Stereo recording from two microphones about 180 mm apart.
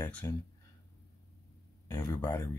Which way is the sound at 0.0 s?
10° left (ahead or behind).